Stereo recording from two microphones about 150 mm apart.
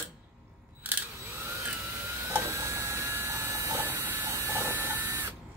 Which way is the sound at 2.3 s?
20° right (ahead or behind).